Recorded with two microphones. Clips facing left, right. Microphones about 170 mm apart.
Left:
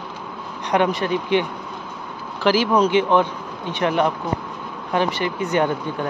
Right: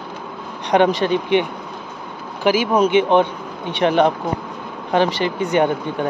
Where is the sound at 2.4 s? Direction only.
20° right (ahead or behind).